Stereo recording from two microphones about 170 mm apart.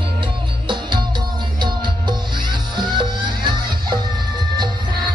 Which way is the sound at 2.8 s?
25° right (ahead or behind).